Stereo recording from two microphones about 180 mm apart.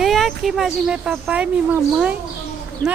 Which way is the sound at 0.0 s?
Centre (ahead or behind).